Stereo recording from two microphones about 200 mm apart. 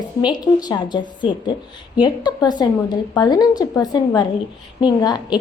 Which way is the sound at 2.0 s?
20° left (ahead or behind).